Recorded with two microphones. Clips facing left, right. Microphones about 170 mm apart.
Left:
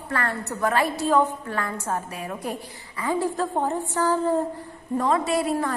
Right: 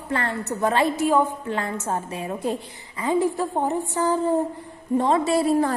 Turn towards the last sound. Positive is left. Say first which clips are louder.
# right 4 dB
turn(degrees=-30)  # may be behind; listen again after turning